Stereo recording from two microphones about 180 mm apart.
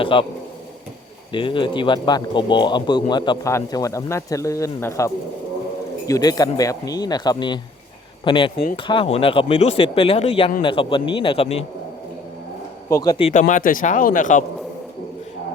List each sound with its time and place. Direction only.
0.0 s speech: 30° left (ahead or behind)
1.3 s speech: 25° left (ahead or behind)
12.9 s speech: 20° left (ahead or behind)
13.3 s speech: 45° left (ahead or behind)